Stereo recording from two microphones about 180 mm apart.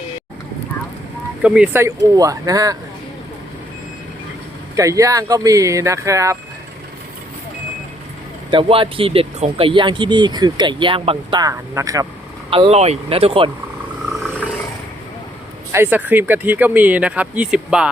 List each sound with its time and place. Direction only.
1.4 s speech: 5° right (ahead or behind)
4.8 s speech: 20° right (ahead or behind)
8.4 s speech: 30° right (ahead or behind)
12.5 s speech: 30° right (ahead or behind)
15.7 s speech: 10° right (ahead or behind)